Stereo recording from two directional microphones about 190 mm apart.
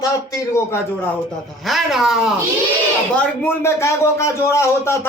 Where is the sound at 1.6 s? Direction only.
Centre (ahead or behind).